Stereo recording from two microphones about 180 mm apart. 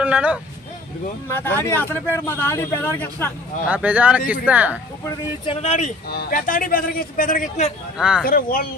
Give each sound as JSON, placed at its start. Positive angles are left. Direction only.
{"t": 0.0, "sound": "speech", "side_deg": -5}
{"t": 1.3, "sound": "speech", "side_deg": 10}
{"t": 3.7, "sound": "speech", "side_deg": -5}
{"t": 5.6, "sound": "speech", "side_deg": 40}
{"t": 6.1, "sound": "speech", "side_deg": 60}
{"t": 7.9, "sound": "speech", "side_deg": -5}
{"t": 8.2, "sound": "speech", "side_deg": 55}